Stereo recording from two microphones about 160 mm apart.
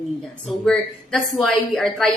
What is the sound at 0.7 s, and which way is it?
A woman's voice, 5° left (ahead or behind).